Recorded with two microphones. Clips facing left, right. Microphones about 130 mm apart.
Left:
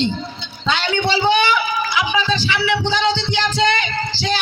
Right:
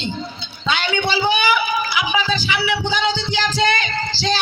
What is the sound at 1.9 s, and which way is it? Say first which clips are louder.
Music: left 4 dB; 25° left (ahead or behind).